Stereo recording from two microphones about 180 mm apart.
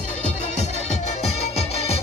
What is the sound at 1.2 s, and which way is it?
Music, 35° left (ahead or behind).